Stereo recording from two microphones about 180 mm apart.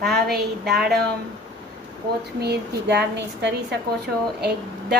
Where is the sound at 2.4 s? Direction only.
65° right (ahead or behind).